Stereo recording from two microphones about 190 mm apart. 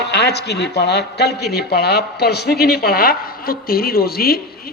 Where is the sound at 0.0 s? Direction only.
60° left (ahead or behind).